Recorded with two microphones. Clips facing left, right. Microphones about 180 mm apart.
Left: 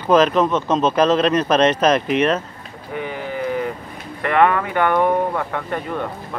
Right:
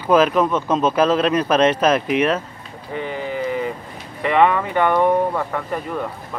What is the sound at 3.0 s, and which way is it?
Sheep, 5° left (ahead or behind).